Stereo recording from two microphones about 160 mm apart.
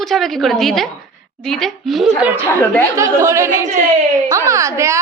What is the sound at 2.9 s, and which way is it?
A child's voice, 20° right (ahead or behind).